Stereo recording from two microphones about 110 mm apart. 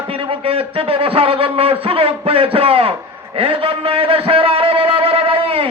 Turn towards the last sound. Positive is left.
turn(degrees=-55)  # may be behind; listen again after turning